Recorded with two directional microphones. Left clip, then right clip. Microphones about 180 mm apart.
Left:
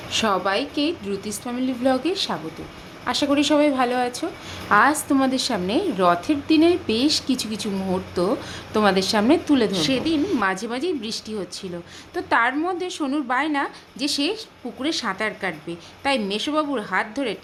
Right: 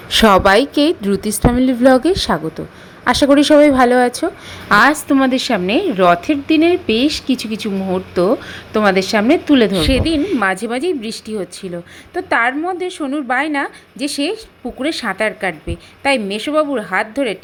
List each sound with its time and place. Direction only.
0.1 s a woman's voice: 50° right (ahead or behind); by 17.3 s 25° right (ahead or behind)